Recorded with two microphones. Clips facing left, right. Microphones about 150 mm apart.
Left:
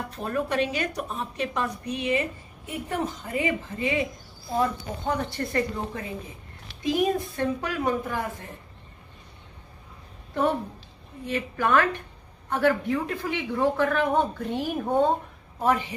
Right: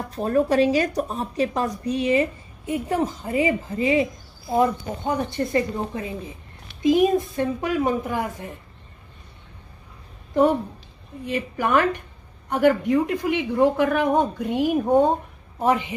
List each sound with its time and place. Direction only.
0.1 s a woman's voice: 35° right (ahead or behind)
3.3 s a woman's voice: 30° right (ahead or behind)
4.5 s speech: 20° right (ahead or behind)
11.2 s a man's voice: 15° right (ahead or behind)